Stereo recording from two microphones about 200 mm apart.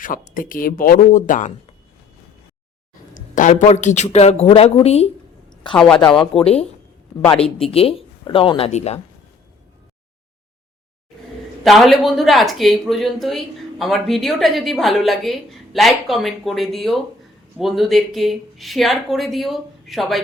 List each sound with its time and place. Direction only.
0.3 s speech: 45° left (ahead or behind)
3.3 s a woman's voice: 40° left (ahead or behind)
5.7 s speech: 5° left (ahead or behind)
6.3 s speech: 30° left (ahead or behind)
11.6 s speech: centre (ahead or behind)